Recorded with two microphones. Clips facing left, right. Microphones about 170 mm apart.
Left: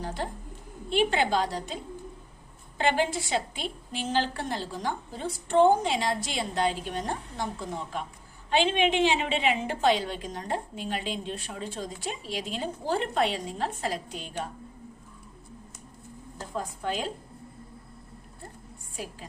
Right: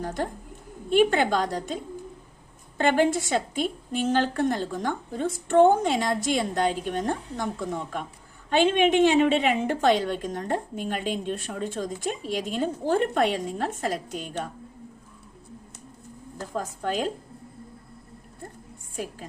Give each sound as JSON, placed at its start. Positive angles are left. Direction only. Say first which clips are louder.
{"t": 0.0, "sound": "a woman's voice", "louder": "right 4 dB", "side_deg": -50}
{"t": 16.4, "sound": "a woman's voice", "louder": "right 3 dB", "side_deg": -45}